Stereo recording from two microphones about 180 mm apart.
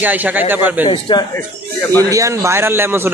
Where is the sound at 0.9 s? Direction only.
30° left (ahead or behind).